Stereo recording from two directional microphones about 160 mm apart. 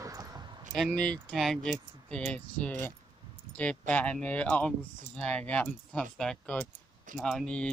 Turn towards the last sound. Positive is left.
turn(degrees=5)  # may be behind; listen again after turning